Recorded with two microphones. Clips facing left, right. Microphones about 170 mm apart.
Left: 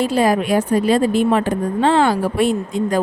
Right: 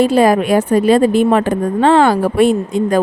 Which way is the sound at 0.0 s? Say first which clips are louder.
Right 5 dB; 60° right (ahead or behind).